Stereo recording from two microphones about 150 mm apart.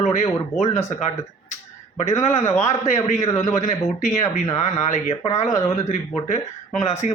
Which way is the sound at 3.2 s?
20° left (ahead or behind).